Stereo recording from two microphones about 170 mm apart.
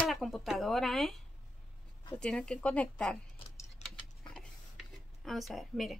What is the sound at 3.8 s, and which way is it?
Tick-tock, 40° left (ahead or behind).